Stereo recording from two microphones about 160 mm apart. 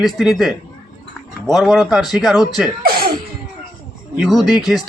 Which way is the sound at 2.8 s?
65° right (ahead or behind).